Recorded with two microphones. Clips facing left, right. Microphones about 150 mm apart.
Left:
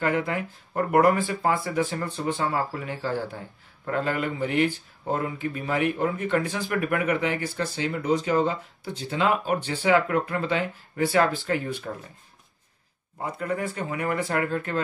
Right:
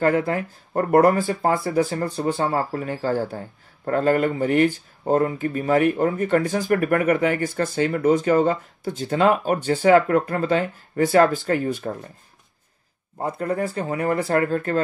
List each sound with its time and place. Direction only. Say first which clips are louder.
0.0 s speech: right 5 dB; 40° right (ahead or behind)
13.2 s speech: right 5 dB; 35° right (ahead or behind)